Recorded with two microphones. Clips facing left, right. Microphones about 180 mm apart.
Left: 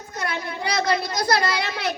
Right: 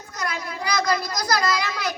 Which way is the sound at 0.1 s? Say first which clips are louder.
Left 1 dB; 30° left (ahead or behind).